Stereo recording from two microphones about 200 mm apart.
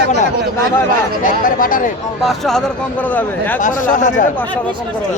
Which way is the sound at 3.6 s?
40° left (ahead or behind).